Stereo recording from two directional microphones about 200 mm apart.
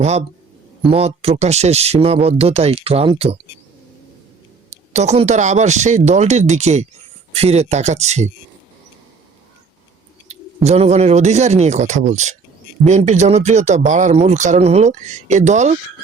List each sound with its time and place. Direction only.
0.0 s speech: 35° right (ahead or behind)
4.9 s speech: 35° right (ahead or behind)
10.2 s speech: 35° right (ahead or behind)